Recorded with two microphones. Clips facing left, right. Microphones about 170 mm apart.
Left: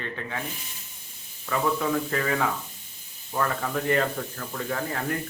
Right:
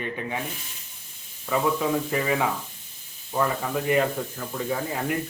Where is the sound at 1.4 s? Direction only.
15° right (ahead or behind).